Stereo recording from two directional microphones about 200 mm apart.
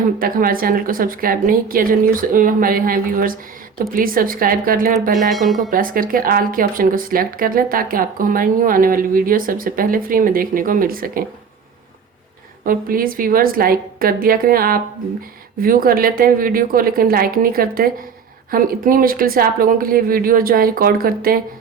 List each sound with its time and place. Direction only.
0.2 s speech: 45° right (ahead or behind)
5.1 s speech: centre (ahead or behind)
5.7 s speech: 45° right (ahead or behind)
12.6 s speech: 45° right (ahead or behind)